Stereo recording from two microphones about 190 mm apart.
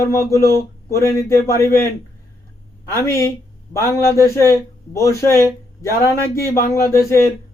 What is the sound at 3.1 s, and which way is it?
Speech, 15° left (ahead or behind).